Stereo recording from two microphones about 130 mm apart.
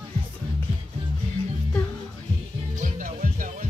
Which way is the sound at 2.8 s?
90° right.